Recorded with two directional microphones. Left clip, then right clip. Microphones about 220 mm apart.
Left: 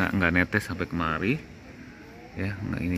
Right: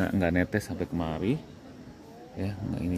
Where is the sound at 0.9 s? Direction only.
30° left (ahead or behind).